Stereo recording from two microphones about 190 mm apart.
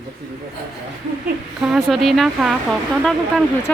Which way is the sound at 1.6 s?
Centre (ahead or behind).